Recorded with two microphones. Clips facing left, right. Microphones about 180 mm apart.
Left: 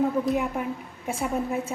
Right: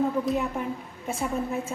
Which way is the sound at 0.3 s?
5° left (ahead or behind).